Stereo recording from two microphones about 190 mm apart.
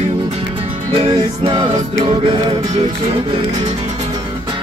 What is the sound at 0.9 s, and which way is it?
Music, 25° right (ahead or behind).